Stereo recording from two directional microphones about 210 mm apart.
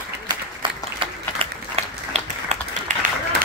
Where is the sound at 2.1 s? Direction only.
30° right (ahead or behind).